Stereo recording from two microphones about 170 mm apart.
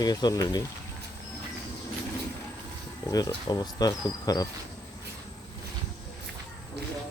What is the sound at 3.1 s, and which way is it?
Speech, 20° left (ahead or behind).